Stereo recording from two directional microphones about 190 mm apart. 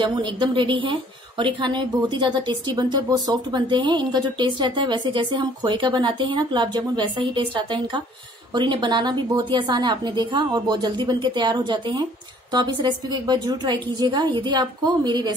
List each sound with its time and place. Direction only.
0.0 s speech: 25° right (ahead or behind)